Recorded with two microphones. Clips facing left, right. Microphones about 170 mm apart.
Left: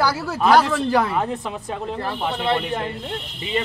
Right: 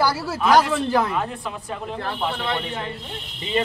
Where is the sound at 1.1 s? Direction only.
25° left (ahead or behind).